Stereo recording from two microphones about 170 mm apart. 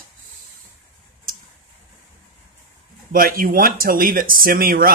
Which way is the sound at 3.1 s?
60° right (ahead or behind).